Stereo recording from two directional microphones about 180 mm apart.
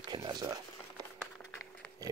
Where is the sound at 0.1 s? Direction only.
25° right (ahead or behind).